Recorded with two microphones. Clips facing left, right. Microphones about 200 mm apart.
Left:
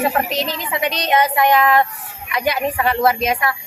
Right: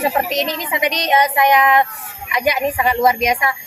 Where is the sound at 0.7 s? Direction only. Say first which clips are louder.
Right 1 dB; 15° right (ahead or behind).